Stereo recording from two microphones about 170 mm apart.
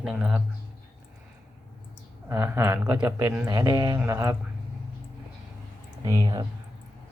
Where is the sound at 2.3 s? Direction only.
15° right (ahead or behind).